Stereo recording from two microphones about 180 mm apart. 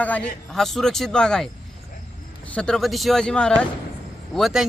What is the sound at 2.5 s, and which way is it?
Speech, 5° left (ahead or behind).